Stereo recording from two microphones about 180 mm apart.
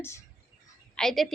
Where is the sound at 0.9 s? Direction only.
5° left (ahead or behind).